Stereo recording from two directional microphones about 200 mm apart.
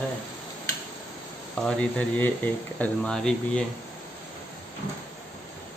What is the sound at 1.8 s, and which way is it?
Speech, 5° left (ahead or behind).